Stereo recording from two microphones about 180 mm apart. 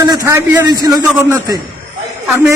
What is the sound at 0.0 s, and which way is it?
A man's voice, 20° right (ahead or behind).